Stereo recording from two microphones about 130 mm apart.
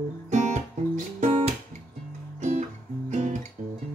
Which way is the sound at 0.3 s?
65° right (ahead or behind).